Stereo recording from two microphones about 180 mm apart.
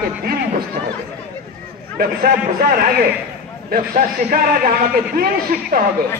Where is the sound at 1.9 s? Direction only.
55° right (ahead or behind).